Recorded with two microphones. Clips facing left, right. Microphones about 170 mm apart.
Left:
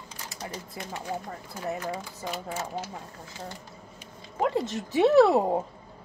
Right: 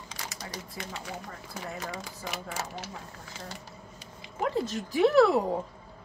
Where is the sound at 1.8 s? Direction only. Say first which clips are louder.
Left 4 dB; 90° right.